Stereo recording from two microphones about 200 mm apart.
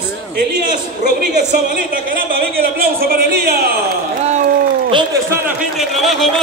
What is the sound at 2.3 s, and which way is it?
Speech, 50° right (ahead or behind).